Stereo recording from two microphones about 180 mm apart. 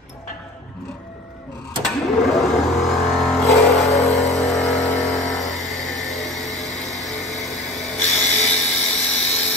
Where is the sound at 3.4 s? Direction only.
Centre (ahead or behind).